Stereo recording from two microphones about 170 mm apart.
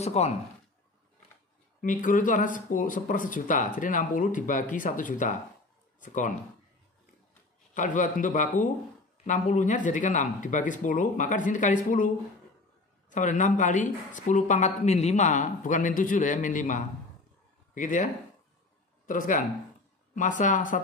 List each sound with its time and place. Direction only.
0.0 s speech: 40° left (ahead or behind)
1.8 s speech: 50° left (ahead or behind)
7.7 s speech: 50° left (ahead or behind)
13.1 s speech: 50° left (ahead or behind)